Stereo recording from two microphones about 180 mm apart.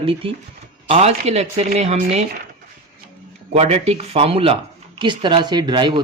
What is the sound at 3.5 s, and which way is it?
Speech, 35° right (ahead or behind).